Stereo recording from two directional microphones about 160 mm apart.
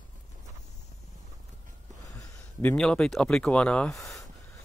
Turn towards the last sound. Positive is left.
turn(degrees=0)  # may be behind; listen again after turning